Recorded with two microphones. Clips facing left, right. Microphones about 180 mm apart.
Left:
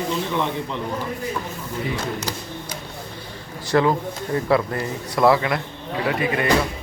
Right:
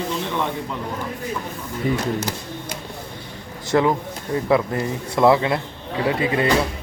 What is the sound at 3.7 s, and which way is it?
Speech, 20° right (ahead or behind).